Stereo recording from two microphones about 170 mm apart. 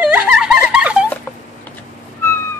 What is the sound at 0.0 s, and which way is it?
Giggle, 5° right (ahead or behind).